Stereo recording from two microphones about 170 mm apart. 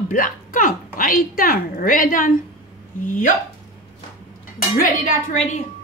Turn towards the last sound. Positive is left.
turn(degrees=45)  # may be behind; listen again after turning